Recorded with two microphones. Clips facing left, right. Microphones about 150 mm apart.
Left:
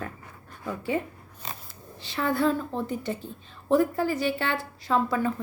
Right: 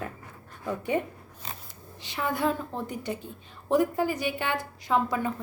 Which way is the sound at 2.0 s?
15° right (ahead or behind).